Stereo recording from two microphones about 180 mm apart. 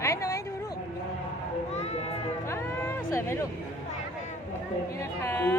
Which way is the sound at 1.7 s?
40° left (ahead or behind).